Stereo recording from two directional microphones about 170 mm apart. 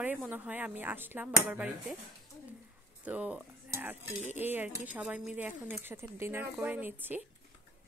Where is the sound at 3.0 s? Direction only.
10° right (ahead or behind).